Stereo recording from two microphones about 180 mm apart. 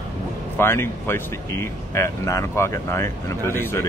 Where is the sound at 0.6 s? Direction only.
15° left (ahead or behind).